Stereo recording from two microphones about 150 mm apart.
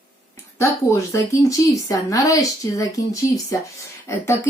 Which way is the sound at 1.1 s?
20° left (ahead or behind).